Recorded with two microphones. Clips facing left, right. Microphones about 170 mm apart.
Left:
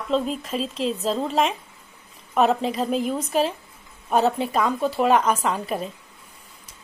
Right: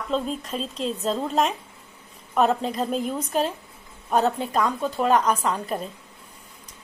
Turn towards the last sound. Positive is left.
turn(degrees=5)  # may be behind; listen again after turning